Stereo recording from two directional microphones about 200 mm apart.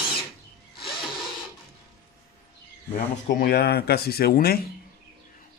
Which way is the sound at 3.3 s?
50° left (ahead or behind).